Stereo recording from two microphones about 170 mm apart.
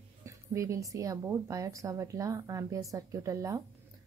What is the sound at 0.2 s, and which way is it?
A woman's voice, 20° right (ahead or behind).